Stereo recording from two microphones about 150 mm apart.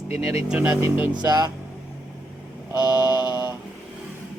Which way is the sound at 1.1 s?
25° right (ahead or behind).